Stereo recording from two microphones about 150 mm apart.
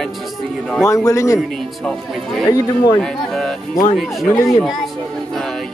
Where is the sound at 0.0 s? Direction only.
Centre (ahead or behind).